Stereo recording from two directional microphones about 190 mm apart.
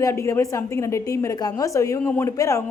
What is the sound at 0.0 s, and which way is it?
A woman's voice, 15° left (ahead or behind).